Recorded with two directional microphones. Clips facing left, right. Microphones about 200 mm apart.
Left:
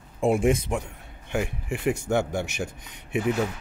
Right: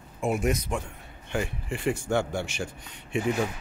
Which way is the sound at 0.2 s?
30° left (ahead or behind).